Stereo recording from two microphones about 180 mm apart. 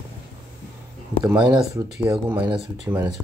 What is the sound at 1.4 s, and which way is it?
Speech, 25° right (ahead or behind).